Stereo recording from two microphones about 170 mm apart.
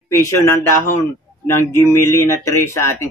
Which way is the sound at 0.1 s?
15° left (ahead or behind).